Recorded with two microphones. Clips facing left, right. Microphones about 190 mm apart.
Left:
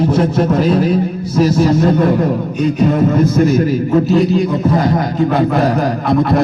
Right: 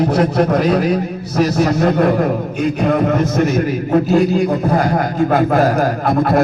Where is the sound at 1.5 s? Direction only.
60° right (ahead or behind).